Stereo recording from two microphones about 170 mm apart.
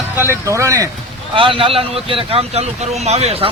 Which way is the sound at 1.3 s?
30° right (ahead or behind).